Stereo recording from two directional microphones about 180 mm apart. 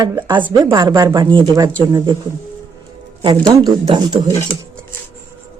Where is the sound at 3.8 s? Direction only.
25° right (ahead or behind).